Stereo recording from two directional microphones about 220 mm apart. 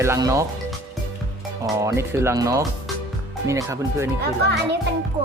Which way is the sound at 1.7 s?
15° right (ahead or behind).